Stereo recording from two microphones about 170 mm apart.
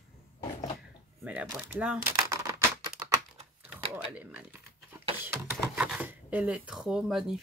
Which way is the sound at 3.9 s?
10° right (ahead or behind).